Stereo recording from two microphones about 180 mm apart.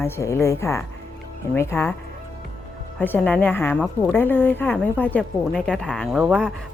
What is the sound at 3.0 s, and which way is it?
A woman's voice, 10° left (ahead or behind).